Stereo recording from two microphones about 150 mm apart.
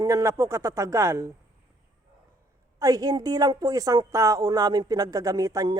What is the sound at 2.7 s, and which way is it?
A woman's voice, 25° right (ahead or behind).